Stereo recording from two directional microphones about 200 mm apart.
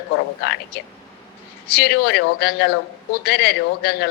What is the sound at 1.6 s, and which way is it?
A woman's voice, 55° left (ahead or behind).